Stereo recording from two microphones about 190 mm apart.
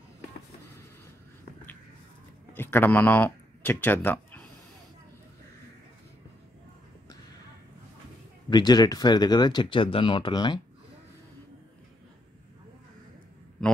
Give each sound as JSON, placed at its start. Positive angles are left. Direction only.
{"t": 2.5, "sound": "speech", "side_deg": 10}
{"t": 8.5, "sound": "speech", "side_deg": 20}